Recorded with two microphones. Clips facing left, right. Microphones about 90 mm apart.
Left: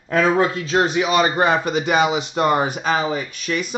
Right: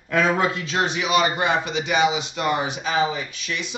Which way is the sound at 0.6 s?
35° left (ahead or behind).